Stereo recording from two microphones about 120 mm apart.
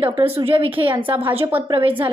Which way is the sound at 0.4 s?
50° right (ahead or behind).